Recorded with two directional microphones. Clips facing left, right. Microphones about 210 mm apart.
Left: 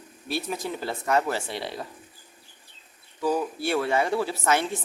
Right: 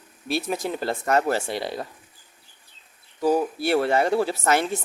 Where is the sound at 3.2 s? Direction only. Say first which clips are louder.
Right 4 dB; 40° right (ahead or behind).